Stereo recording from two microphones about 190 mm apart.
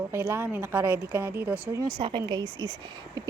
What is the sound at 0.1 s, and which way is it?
A woman's voice, 10° right (ahead or behind).